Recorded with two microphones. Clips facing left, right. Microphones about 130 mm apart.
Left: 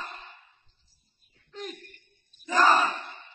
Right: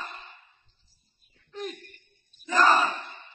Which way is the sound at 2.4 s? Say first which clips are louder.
Even; centre (ahead or behind).